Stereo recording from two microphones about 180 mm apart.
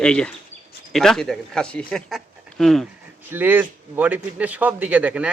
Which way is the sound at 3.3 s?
10° right (ahead or behind).